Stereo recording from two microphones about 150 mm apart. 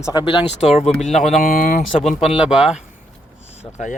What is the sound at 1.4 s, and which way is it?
Speech, 70° left (ahead or behind).